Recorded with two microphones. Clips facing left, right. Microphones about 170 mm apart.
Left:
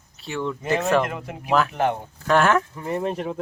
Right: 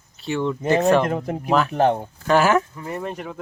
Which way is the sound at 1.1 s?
40° right (ahead or behind).